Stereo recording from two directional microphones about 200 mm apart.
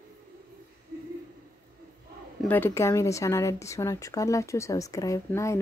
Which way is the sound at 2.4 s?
10° left (ahead or behind).